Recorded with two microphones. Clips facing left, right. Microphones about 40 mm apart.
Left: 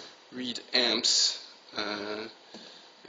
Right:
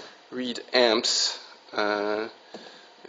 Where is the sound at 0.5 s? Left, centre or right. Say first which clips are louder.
Right 7 dB; right.